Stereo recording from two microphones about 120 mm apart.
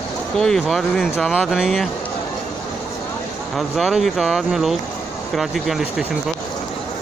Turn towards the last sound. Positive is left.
turn(degrees=0)  # may be behind; listen again after turning